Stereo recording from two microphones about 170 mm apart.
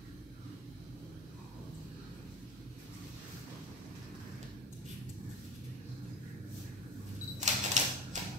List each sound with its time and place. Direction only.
7.3 s typewriter: 45° right (ahead or behind)